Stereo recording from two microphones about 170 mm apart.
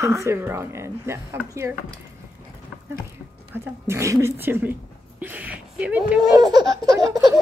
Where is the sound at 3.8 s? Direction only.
15° right (ahead or behind).